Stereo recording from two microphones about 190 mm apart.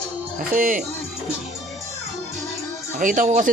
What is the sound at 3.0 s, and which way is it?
Speech, 45° right (ahead or behind).